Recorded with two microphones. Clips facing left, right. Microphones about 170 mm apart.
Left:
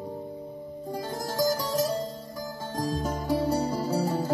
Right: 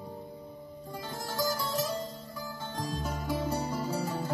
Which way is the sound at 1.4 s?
40° left (ahead or behind).